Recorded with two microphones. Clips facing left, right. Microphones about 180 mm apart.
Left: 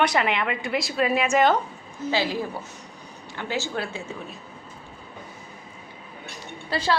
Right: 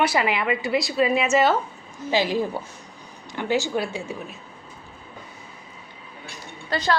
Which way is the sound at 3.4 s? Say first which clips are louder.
Right 5 dB; 15° right (ahead or behind).